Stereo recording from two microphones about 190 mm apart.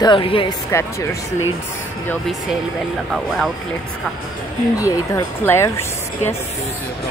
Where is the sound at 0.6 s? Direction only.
15° left (ahead or behind).